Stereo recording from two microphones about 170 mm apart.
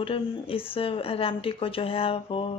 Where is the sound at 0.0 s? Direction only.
35° left (ahead or behind).